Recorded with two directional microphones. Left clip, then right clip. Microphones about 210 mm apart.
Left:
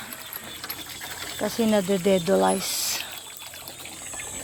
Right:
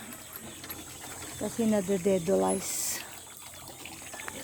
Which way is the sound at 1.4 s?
Centre (ahead or behind).